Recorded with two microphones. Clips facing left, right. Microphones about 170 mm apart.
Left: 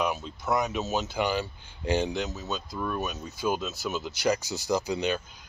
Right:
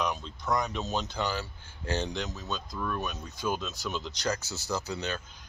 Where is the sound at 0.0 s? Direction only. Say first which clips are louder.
Left 3 dB; 5° left (ahead or behind).